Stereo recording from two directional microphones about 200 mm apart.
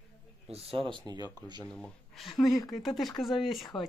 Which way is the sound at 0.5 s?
30° right (ahead or behind).